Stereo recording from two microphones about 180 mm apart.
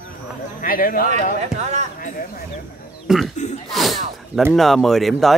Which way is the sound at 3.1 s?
5° right (ahead or behind).